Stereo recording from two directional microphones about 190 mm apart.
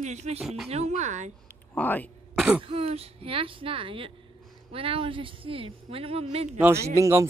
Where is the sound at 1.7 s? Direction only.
10° left (ahead or behind).